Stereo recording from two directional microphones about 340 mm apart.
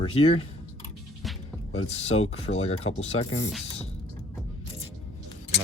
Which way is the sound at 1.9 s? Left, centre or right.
Centre.